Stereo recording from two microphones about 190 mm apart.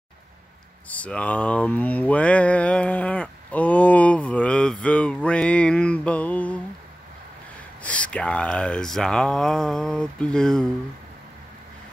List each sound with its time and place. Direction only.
0.8 s a sound: 5° left (ahead or behind)
4.8 s mantra: 5° left (ahead or behind)
7.8 s speech: 5° left (ahead or behind)